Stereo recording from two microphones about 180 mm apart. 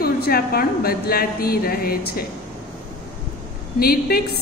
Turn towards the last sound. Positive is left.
turn(degrees=55)  # may be behind; listen again after turning